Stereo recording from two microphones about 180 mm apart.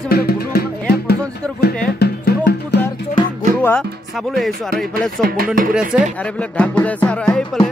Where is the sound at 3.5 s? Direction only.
10° left (ahead or behind).